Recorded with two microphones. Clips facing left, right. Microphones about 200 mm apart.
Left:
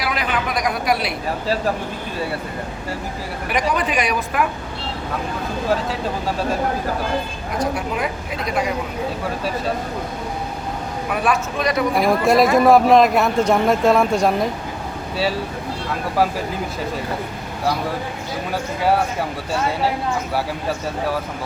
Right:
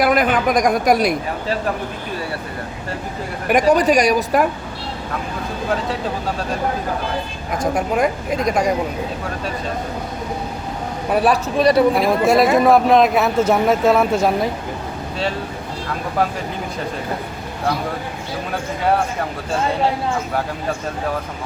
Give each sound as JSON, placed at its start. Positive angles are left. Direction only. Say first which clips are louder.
{"t": 0.0, "sound": "a woman's voice", "louder": "right 7 dB", "side_deg": -50}
{"t": 3.7, "sound": "a woman's voice", "louder": "right 9 dB", "side_deg": -40}
{"t": 7.6, "sound": "a woman's voice", "louder": "right 5 dB", "side_deg": -50}
{"t": 11.1, "sound": "a woman's voice", "louder": "right 5 dB", "side_deg": -35}
{"t": 11.9, "sound": "speech", "louder": "right 1 dB", "side_deg": 0}